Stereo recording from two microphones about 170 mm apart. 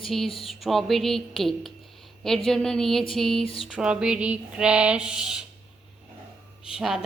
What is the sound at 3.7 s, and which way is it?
A woman's voice, 5° right (ahead or behind).